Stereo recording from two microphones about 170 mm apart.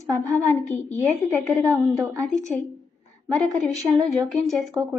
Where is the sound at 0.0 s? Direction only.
20° right (ahead or behind).